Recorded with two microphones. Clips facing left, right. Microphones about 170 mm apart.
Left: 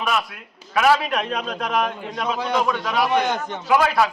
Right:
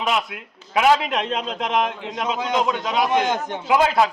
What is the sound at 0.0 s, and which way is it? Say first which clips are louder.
A man's voice: right 1 dB; 20° right (ahead or behind).